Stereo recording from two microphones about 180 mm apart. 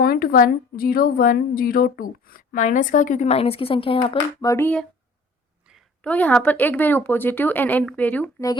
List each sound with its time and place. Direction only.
0.0 s a woman's voice: 55° left (ahead or behind); by 8.4 s 10° left (ahead or behind)